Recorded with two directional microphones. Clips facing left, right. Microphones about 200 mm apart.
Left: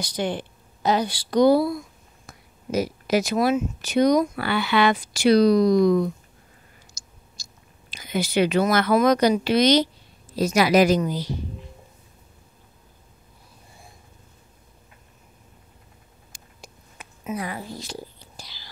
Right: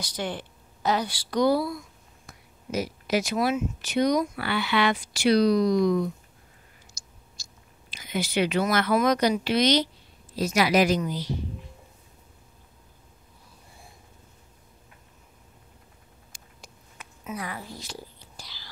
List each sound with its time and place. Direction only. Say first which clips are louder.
0.0 s speech: left 5 dB; 20° left (ahead or behind)
2.7 s speech: left 4 dB; 40° left (ahead or behind)
7.9 s speech: left 4 dB; 40° left (ahead or behind)
17.0 s a sound: left 5 dB; 20° left (ahead or behind)
18.4 s whispering: left 2 dB; 15° left (ahead or behind)